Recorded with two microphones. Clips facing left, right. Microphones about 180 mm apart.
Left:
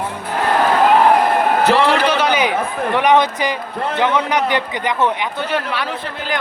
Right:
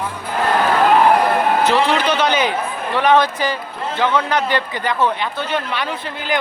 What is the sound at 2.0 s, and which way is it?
A man's voice, 10° left (ahead or behind).